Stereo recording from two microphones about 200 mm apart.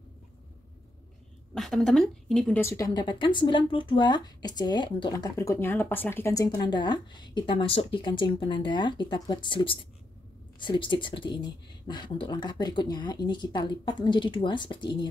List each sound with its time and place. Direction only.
1.5 s a woman's voice: centre (ahead or behind); by 15.0 s 25° left (ahead or behind)